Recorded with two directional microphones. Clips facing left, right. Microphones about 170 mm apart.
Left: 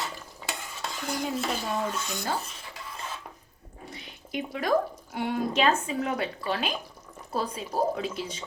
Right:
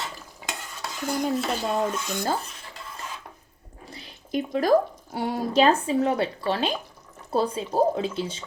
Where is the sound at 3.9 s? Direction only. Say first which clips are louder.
Right 6 dB; 35° right (ahead or behind).